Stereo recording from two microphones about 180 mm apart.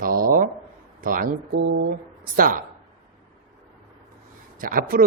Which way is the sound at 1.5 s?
80° right.